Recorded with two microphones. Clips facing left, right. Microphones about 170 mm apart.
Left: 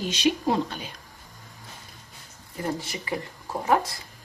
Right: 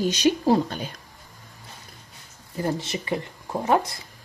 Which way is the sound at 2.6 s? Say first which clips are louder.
Right 3 dB; 25° right (ahead or behind).